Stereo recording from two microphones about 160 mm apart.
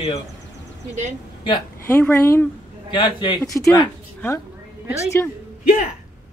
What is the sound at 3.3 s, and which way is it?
Speech, centre (ahead or behind).